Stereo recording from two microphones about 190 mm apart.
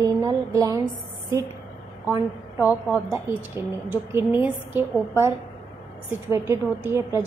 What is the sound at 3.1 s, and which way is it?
A woman's voice, 10° right (ahead or behind).